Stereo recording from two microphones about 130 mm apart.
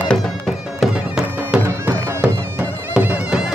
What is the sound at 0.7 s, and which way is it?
Bagpipes, 5° right (ahead or behind).